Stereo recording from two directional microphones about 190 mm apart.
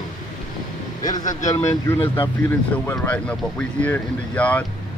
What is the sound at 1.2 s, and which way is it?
Speech, 40° left (ahead or behind).